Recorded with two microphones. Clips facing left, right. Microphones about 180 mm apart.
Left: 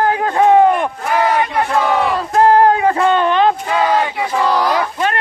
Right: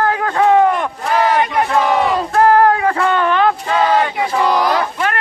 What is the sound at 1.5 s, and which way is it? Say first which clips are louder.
Battle cry: right 1 dB; 15° right (ahead or behind).